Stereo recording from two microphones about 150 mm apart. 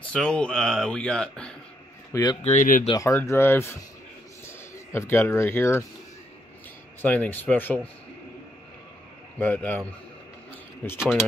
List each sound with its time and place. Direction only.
0.1 s speech: 5° left (ahead or behind)
2.4 s speech: 55° left (ahead or behind)
2.9 s speech: 20° left (ahead or behind)
7.0 s speech: 10° left (ahead or behind)
9.4 s speech: 10° left (ahead or behind)
10.8 s speech: 10° left (ahead or behind)